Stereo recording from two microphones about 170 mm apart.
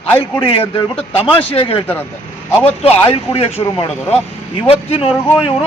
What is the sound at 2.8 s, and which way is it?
Speech, 35° left (ahead or behind).